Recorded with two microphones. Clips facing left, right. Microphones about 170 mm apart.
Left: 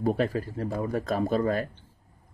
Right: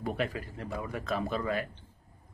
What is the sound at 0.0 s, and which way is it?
Speech, 40° left (ahead or behind).